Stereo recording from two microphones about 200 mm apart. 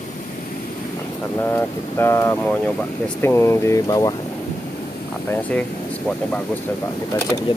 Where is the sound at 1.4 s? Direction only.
10° left (ahead or behind).